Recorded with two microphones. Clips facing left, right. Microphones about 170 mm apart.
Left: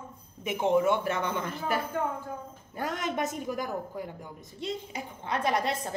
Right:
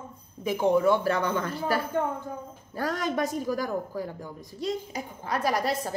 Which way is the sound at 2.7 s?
20° left (ahead or behind).